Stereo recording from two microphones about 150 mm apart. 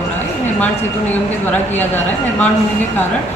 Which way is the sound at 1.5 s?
10° left (ahead or behind).